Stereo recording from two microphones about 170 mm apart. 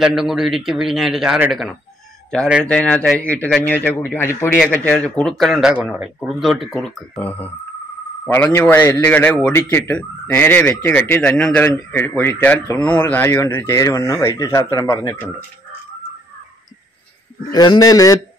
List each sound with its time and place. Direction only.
0.0 s a man's voice: centre (ahead or behind); by 15.2 s 15° left (ahead or behind)
17.5 s a man's voice: 25° left (ahead or behind)